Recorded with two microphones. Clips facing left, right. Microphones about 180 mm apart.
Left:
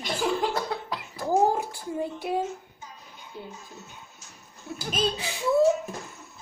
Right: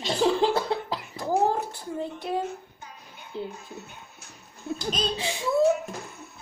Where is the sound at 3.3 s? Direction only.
25° right (ahead or behind).